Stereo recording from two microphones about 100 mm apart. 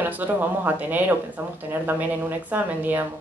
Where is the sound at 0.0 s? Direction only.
20° right (ahead or behind).